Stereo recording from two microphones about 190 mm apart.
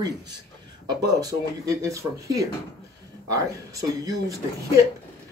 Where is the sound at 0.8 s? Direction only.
20° right (ahead or behind).